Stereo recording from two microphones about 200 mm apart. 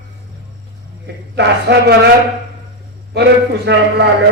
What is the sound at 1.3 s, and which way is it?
Speech, 60° right (ahead or behind).